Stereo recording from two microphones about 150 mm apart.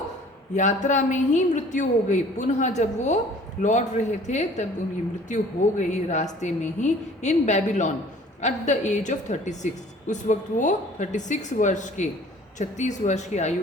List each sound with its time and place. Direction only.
0.5 s a woman's voice: 55° left (ahead or behind)
5.8 s a woman's voice: 50° left (ahead or behind)